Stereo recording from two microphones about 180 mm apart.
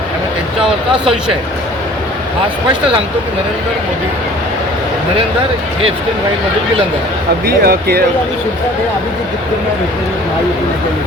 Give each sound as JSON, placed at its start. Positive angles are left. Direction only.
{"t": 7.4, "sound": "speech", "side_deg": -60}